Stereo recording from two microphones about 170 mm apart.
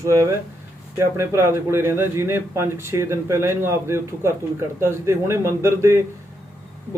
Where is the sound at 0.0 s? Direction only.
20° right (ahead or behind).